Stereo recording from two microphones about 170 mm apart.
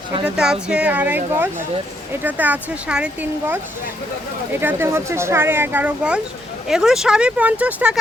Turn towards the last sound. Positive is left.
turn(degrees=-10)  # may be behind; listen again after turning